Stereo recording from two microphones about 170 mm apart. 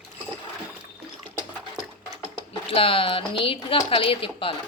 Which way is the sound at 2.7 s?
35° left (ahead or behind).